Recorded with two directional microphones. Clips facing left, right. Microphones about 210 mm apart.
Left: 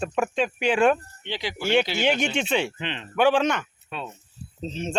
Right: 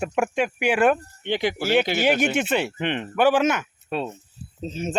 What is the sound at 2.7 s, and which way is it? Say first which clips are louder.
Speech: right 7 dB; 55° right (ahead or behind).